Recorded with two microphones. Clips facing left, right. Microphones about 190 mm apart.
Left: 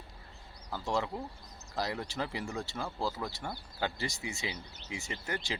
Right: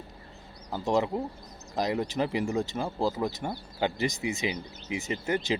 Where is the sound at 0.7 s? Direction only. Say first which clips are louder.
Right 7 dB; 20° right (ahead or behind).